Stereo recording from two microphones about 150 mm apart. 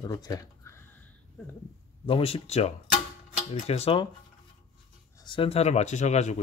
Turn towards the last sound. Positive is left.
turn(degrees=50)  # may be behind; listen again after turning